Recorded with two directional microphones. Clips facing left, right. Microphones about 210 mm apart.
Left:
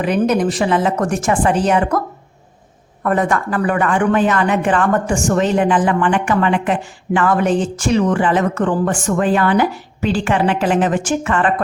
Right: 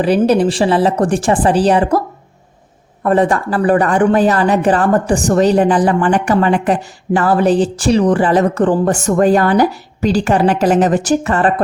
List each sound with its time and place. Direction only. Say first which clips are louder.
0.0 s a man's voice: right 4 dB; 35° right (ahead or behind)